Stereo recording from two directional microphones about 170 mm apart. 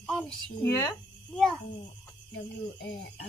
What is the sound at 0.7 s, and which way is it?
Speech, 15° left (ahead or behind).